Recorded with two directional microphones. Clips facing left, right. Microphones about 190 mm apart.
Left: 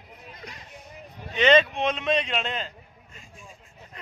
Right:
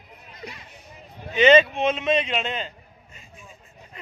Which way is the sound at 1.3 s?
5° right (ahead or behind).